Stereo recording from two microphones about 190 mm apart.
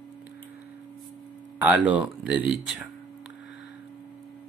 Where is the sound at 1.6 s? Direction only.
10° right (ahead or behind).